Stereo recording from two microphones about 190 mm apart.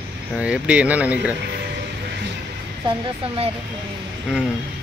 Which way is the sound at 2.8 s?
25° right (ahead or behind).